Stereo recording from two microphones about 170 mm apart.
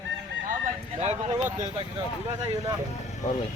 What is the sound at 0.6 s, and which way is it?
Speech, 40° right (ahead or behind).